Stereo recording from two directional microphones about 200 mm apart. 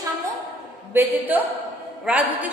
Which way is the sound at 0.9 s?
10° right (ahead or behind).